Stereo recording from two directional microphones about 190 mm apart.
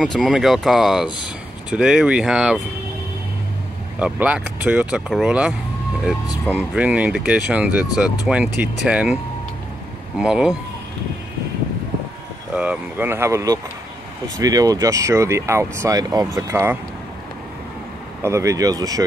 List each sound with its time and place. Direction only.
0.0 s speech: centre (ahead or behind)
1.0 s speech: 25° left (ahead or behind)
1.7 s speech: 5° right (ahead or behind)
4.0 s speech: 5° right (ahead or behind)
12.5 s speech: 10° right (ahead or behind)
18.2 s speech: 15° right (ahead or behind)